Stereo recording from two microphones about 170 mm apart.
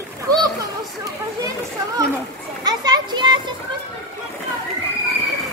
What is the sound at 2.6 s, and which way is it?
Children playing, 25° right (ahead or behind).